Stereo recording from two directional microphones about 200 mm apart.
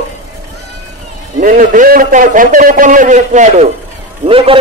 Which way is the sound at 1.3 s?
40° right (ahead or behind).